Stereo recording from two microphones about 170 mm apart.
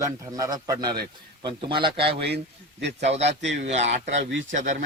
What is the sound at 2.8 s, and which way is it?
Speech, 90° right.